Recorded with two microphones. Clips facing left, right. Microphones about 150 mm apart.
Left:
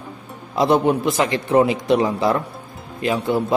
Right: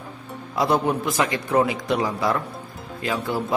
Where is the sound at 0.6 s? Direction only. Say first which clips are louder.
Left 5 dB; 20° left (ahead or behind).